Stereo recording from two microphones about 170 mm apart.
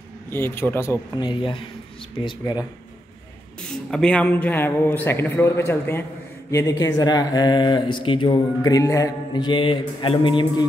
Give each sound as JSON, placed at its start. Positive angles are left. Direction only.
{"t": 0.3, "sound": "a man's voice", "side_deg": 15}
{"t": 1.2, "sound": "speech", "side_deg": 30}
{"t": 3.9, "sound": "a man's voice", "side_deg": 5}